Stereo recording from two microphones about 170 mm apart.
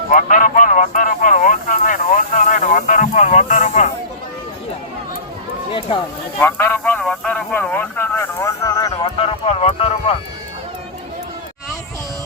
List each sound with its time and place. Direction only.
0.1 s speech: 50° left (ahead or behind)
6.4 s a man's voice: 10° left (ahead or behind)
9.0 s speech: 35° left (ahead or behind)